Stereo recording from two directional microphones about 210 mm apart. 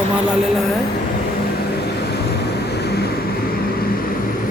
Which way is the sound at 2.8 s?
50° left (ahead or behind).